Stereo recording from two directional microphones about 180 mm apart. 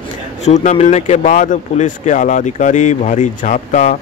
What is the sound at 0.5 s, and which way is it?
Speech, 40° left (ahead or behind).